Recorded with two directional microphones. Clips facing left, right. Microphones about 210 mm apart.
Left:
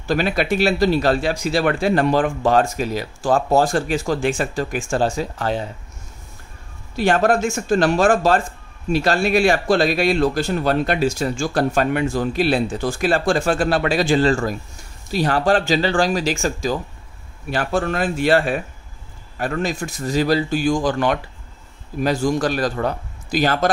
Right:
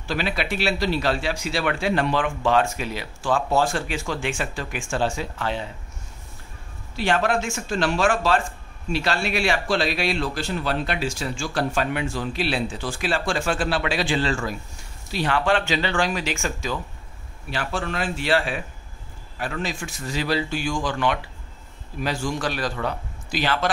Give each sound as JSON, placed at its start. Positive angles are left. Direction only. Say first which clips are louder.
{"t": 0.0, "sound": "speech", "louder": "left 6 dB", "side_deg": 45}
{"t": 7.0, "sound": "speech", "louder": "left 6 dB", "side_deg": 45}